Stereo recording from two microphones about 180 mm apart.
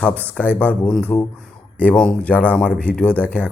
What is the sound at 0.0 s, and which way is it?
Speech, 10° left (ahead or behind).